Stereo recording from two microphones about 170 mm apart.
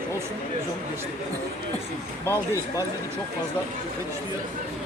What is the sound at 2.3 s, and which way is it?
Speech, 20° left (ahead or behind).